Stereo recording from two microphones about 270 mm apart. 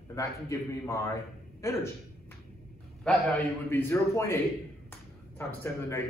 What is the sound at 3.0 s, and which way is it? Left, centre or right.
A man's voice, centre.